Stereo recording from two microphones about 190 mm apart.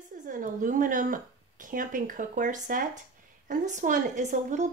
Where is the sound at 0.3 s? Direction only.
45° right (ahead or behind).